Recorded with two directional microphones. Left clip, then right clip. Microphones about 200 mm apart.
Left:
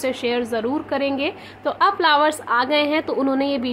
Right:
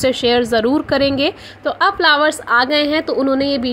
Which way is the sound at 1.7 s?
15° right (ahead or behind).